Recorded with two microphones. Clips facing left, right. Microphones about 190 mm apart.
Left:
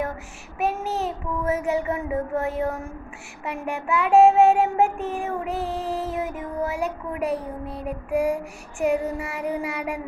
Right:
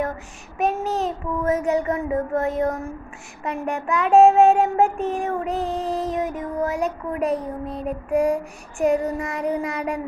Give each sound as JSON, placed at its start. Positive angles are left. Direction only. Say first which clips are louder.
{"t": 0.6, "sound": "child singing", "louder": "right 3 dB", "side_deg": 10}
{"t": 5.9, "sound": "a sound", "louder": "right 3 dB", "side_deg": -15}
{"t": 6.1, "sound": "child singing", "louder": "right 3 dB", "side_deg": 10}